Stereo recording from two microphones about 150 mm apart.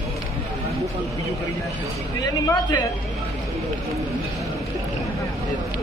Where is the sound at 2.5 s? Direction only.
25° left (ahead or behind).